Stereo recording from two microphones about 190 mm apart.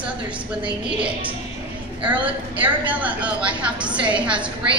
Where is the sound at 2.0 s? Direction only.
10° right (ahead or behind).